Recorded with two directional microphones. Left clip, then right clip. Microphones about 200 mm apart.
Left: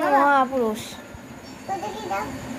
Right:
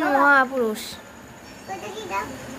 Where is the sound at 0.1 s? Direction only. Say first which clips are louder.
Right 2 dB; 15° right (ahead or behind).